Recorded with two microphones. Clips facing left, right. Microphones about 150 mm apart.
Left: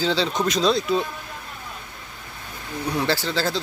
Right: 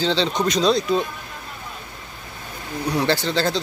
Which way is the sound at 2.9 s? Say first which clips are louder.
Right 3 dB; centre (ahead or behind).